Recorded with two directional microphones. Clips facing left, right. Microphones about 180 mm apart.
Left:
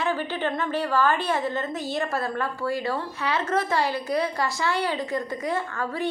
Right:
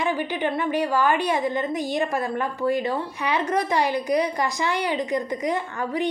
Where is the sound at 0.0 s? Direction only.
15° right (ahead or behind).